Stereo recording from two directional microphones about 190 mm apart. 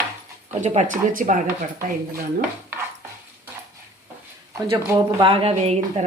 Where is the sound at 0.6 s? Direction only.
35° right (ahead or behind).